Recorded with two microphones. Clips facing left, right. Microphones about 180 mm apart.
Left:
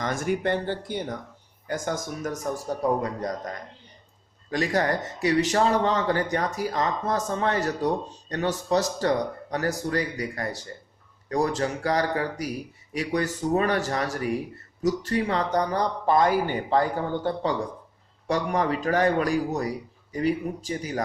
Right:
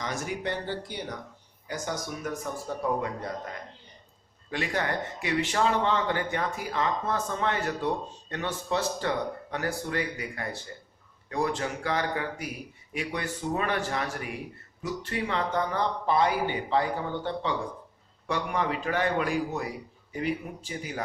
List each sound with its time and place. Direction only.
0.0 s a man's voice: 50° left (ahead or behind)
4.5 s a man's voice: 40° left (ahead or behind)
18.3 s a man's voice: 40° left (ahead or behind)